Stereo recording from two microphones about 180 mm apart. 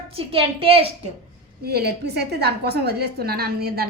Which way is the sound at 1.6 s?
65° right (ahead or behind).